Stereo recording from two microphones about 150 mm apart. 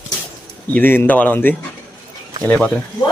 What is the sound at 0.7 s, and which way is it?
Speech, 15° left (ahead or behind).